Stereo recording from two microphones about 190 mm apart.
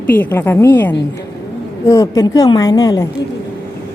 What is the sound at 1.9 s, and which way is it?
A woman's voice, 20° left (ahead or behind).